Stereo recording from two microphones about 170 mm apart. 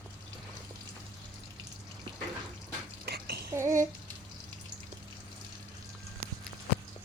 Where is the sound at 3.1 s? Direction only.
70° right (ahead or behind).